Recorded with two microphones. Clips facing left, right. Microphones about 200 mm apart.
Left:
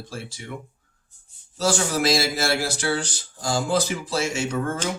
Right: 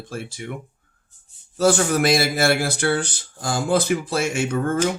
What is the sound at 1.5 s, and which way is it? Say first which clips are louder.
Speech: right 5 dB; 55° right (ahead or behind).